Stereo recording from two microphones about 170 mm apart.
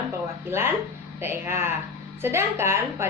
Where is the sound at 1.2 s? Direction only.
15° right (ahead or behind).